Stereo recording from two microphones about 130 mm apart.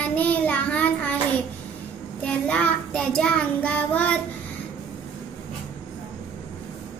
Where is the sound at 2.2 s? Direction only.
10° left (ahead or behind).